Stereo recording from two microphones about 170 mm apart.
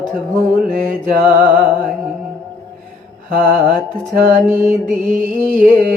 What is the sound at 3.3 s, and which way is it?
Music, 5° left (ahead or behind).